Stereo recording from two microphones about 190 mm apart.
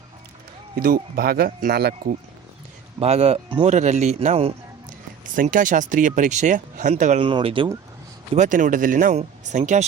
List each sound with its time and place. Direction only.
0.8 s speech: 50° right (ahead or behind)
3.0 s speech: 30° right (ahead or behind)
8.4 s speech: 40° right (ahead or behind)